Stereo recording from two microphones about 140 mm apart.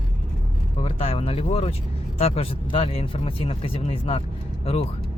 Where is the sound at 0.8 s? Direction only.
40° left (ahead or behind).